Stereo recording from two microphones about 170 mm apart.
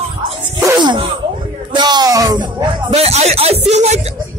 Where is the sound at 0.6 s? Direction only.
25° right (ahead or behind).